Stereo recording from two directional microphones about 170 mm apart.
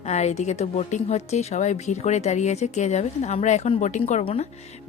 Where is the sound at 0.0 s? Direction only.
40° left (ahead or behind).